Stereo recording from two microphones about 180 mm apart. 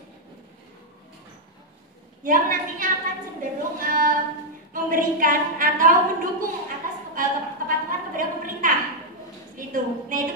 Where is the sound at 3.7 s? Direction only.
50° right (ahead or behind).